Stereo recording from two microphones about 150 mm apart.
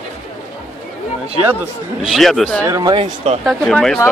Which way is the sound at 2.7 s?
25° right (ahead or behind).